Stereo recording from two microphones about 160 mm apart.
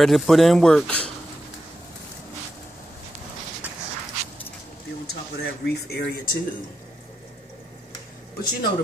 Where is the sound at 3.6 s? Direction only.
10° right (ahead or behind).